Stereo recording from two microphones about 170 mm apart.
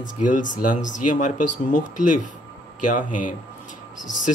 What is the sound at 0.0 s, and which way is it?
Speech, 50° left (ahead or behind).